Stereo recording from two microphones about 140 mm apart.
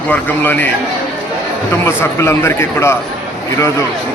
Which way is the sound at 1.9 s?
20° left (ahead or behind).